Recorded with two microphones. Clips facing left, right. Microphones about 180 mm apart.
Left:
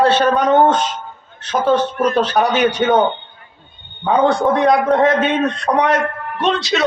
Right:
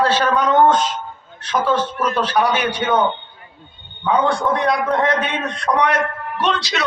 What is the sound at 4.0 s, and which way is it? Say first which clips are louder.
Speech: left 3 dB; 50° left (ahead or behind).